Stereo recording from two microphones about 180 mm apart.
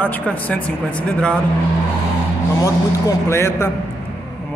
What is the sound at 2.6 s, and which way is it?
A man's voice, 20° left (ahead or behind).